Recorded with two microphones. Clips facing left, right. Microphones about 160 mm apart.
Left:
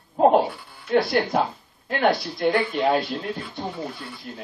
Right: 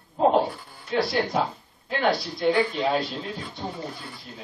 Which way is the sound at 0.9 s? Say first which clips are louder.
Left 3 dB; 55° left (ahead or behind).